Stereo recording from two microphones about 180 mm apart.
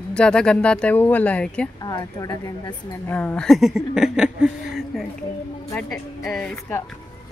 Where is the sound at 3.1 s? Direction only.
5° left (ahead or behind).